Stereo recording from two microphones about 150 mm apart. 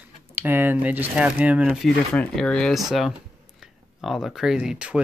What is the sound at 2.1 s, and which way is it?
Speech, 5° left (ahead or behind).